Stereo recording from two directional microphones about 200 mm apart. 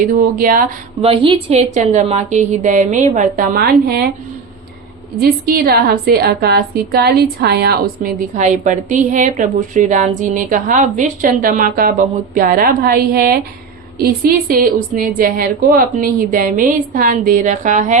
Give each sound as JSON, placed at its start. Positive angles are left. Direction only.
{"t": 0.0, "sound": "a woman's voice", "side_deg": -45}
{"t": 1.0, "sound": "a woman's voice", "side_deg": -25}
{"t": 5.2, "sound": "a woman's voice", "side_deg": -50}